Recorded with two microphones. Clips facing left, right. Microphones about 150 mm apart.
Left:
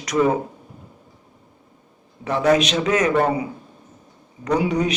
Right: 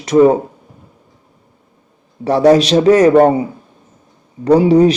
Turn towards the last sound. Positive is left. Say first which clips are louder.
# right 11 dB
turn(degrees=-30)  # may be behind; listen again after turning